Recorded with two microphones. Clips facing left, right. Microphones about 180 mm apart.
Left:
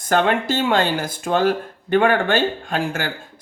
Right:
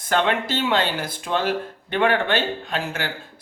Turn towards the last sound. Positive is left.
turn(degrees=50)  # may be behind; listen again after turning